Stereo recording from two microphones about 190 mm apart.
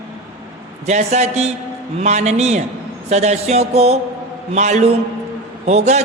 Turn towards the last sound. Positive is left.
turn(degrees=-35)  # may be behind; listen again after turning